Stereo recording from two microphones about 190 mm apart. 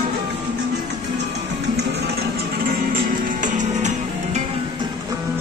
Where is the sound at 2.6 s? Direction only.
45° right (ahead or behind).